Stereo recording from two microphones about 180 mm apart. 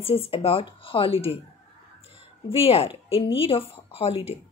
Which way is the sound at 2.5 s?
30° left (ahead or behind).